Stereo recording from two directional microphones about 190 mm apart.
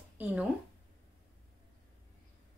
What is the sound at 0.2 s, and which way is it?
Speech, 5° right (ahead or behind).